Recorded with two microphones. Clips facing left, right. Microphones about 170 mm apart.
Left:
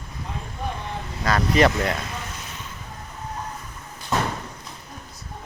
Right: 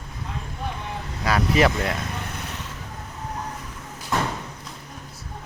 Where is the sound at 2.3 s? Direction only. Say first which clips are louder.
Right 3 dB; 65° right (ahead or behind).